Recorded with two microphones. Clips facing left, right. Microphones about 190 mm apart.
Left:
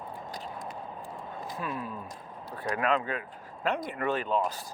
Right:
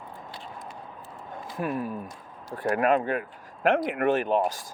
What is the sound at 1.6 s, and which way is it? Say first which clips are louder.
Speech: right 8 dB; 50° right (ahead or behind).